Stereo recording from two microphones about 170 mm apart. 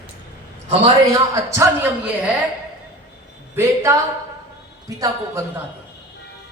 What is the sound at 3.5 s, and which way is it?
Speech, 15° right (ahead or behind).